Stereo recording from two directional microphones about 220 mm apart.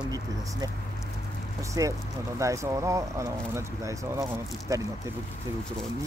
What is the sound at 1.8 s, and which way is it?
Speech, 15° right (ahead or behind).